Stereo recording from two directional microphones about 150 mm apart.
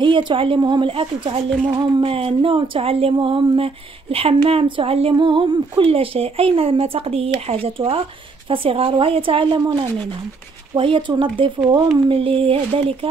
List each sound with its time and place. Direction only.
0.0 s speech: 35° right (ahead or behind)